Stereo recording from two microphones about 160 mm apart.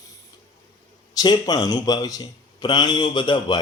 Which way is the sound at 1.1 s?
25° left (ahead or behind).